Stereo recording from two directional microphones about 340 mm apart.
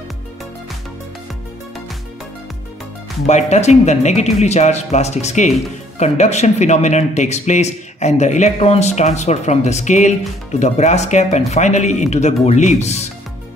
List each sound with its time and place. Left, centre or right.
3.3 s speech: centre